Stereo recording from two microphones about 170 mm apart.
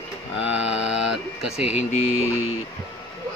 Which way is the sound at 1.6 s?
40° left (ahead or behind).